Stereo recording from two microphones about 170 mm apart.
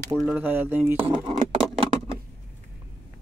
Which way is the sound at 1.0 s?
30° right (ahead or behind).